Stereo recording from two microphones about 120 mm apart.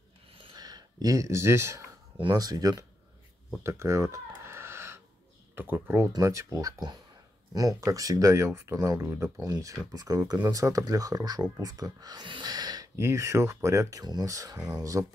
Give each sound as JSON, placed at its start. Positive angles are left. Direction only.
{"t": 0.6, "sound": "speech", "side_deg": -35}
{"t": 2.1, "sound": "speech", "side_deg": -35}
{"t": 3.6, "sound": "a sound", "side_deg": -25}
{"t": 5.6, "sound": "speech", "side_deg": -20}